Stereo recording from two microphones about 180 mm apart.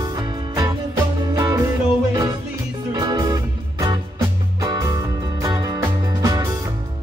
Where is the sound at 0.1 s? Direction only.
20° right (ahead or behind).